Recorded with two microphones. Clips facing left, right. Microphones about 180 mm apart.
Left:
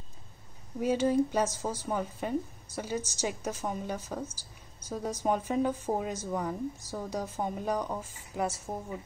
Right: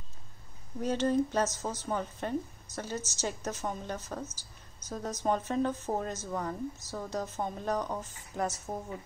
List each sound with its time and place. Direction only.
0.7 s speech: 10° left (ahead or behind)